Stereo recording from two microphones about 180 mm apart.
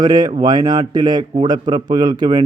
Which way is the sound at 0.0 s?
25° right (ahead or behind).